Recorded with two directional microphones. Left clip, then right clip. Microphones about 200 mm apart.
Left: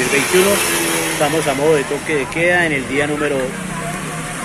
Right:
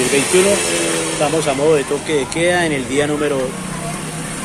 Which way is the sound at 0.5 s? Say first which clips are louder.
Even; 10° left (ahead or behind).